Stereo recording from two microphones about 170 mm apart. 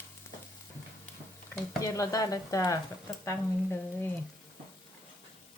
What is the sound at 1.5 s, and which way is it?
Speech, 20° left (ahead or behind).